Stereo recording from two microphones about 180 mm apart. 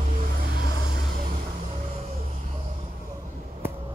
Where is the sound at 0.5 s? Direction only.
60° right (ahead or behind).